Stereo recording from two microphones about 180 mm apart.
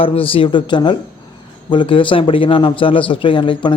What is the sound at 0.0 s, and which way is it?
A man's voice, 30° left (ahead or behind).